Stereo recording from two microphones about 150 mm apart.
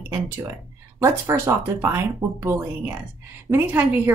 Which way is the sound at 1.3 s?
20° right (ahead or behind).